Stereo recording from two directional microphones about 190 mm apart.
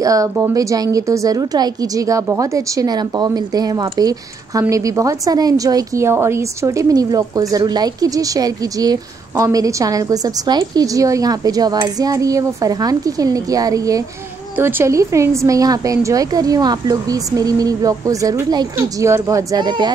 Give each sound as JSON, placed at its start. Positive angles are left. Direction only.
{"t": 0.0, "sound": "a woman's voice", "side_deg": -15}